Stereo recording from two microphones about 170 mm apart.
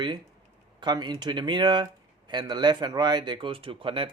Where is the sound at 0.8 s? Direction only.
25° right (ahead or behind).